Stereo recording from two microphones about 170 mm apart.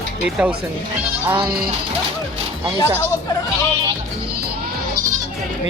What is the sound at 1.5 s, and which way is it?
Speech, 65° right (ahead or behind).